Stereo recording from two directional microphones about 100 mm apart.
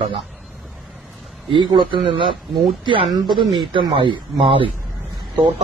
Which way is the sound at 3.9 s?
65° right (ahead or behind).